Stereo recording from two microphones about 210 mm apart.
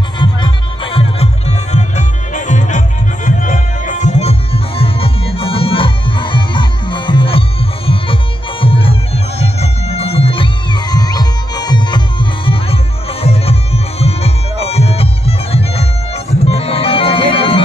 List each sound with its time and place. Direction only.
0.2 s music: 25° left (ahead or behind)